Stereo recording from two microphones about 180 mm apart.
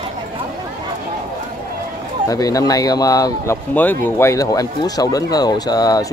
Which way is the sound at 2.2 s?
20° left (ahead or behind).